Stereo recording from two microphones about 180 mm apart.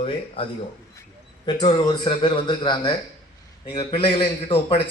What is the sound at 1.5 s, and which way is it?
A man's voice, 25° left (ahead or behind).